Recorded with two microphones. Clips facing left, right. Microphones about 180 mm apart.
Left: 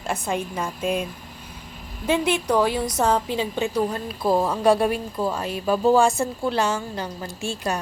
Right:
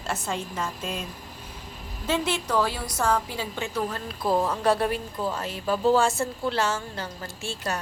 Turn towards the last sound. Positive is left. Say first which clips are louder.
# left 4 dB
turn(degrees=15)  # may be behind; listen again after turning